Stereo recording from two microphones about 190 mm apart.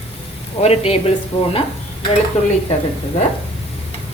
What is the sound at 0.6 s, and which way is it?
Speech, 35° left (ahead or behind).